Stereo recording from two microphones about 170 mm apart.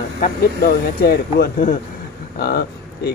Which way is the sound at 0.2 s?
65° left (ahead or behind).